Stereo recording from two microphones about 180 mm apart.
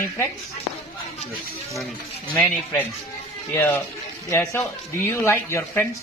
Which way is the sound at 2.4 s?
10° left (ahead or behind).